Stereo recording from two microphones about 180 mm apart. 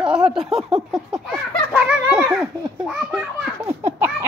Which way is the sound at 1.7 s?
10° right (ahead or behind).